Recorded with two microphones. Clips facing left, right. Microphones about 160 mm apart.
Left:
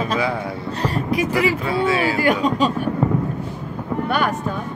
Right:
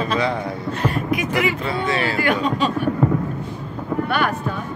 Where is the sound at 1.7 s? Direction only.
10° left (ahead or behind).